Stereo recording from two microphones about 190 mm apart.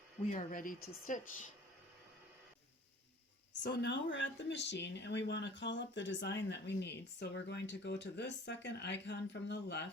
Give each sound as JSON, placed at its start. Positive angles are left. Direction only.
{"t": 0.3, "sound": "speech", "side_deg": 45}
{"t": 3.6, "sound": "speech", "side_deg": 60}